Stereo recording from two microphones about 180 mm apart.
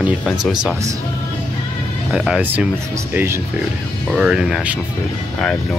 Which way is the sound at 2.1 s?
5° right (ahead or behind).